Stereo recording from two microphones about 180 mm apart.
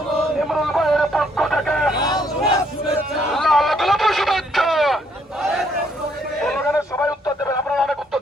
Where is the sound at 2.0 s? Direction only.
20° left (ahead or behind).